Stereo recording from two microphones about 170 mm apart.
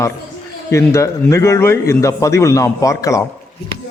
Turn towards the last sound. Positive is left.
turn(degrees=20)  # may be behind; listen again after turning